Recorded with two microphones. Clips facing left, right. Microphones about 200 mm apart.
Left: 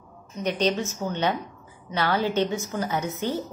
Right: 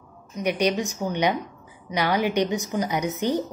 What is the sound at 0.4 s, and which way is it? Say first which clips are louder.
A woman's voice: right 1 dB; 10° right (ahead or behind).